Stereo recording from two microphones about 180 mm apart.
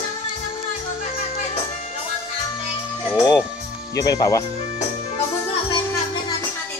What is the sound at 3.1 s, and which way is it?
Music, 20° left (ahead or behind).